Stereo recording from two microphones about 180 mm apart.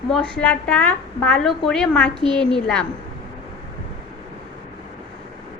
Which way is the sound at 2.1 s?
25° right (ahead or behind).